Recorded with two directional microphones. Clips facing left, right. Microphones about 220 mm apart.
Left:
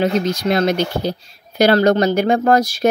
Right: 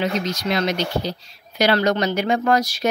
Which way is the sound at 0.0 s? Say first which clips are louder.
Left 6 dB; 55° left (ahead or behind).